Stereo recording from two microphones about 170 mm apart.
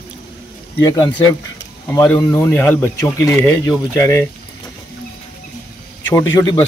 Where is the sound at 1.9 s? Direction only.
15° left (ahead or behind).